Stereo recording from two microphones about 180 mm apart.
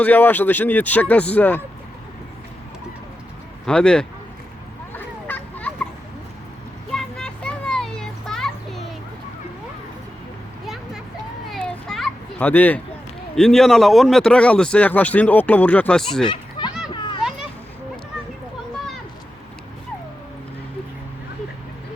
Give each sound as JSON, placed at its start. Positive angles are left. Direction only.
{"t": 0.0, "sound": "speech", "side_deg": 10}
{"t": 3.7, "sound": "speech", "side_deg": 5}
{"t": 4.9, "sound": "a sound", "side_deg": 10}
{"t": 6.9, "sound": "children playing", "side_deg": 5}
{"t": 11.4, "sound": "children playing", "side_deg": 0}
{"t": 13.3, "sound": "speech", "side_deg": 5}
{"t": 16.2, "sound": "a sound", "side_deg": 25}
{"t": 16.9, "sound": "children playing", "side_deg": 25}